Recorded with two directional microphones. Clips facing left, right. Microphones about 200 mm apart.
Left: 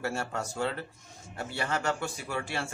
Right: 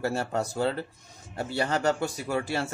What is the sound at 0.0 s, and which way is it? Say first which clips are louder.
Speech: right 5 dB; 35° right (ahead or behind).